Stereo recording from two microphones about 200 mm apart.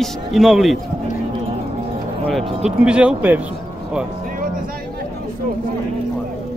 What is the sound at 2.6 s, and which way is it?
Speech, 5° right (ahead or behind).